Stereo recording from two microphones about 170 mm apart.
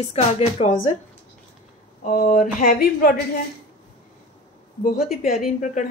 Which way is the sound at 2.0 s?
50° left (ahead or behind).